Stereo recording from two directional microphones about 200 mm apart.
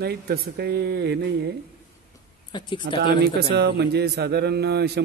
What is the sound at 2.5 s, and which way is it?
Speech, 20° left (ahead or behind).